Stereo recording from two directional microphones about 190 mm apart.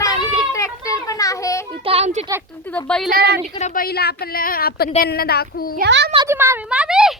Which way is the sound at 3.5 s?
40° left (ahead or behind).